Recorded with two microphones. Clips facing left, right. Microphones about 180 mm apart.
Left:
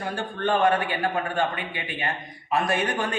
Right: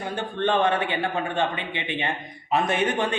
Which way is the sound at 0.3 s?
25° right (ahead or behind).